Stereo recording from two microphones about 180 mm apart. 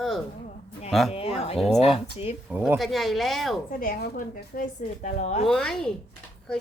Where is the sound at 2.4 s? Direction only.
10° right (ahead or behind).